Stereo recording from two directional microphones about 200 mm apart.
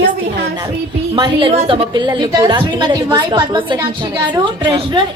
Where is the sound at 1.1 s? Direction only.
25° right (ahead or behind).